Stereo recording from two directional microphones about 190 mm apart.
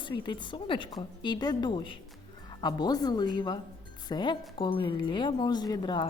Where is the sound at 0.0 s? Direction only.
25° left (ahead or behind).